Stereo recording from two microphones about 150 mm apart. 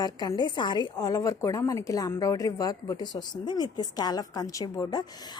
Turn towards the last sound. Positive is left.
turn(degrees=25)  # may be behind; listen again after turning